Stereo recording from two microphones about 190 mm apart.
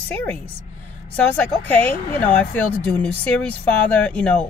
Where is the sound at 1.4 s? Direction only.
10° left (ahead or behind).